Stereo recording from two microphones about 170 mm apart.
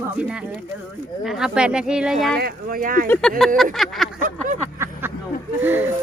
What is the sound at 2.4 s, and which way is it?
Speech, 60° right (ahead or behind).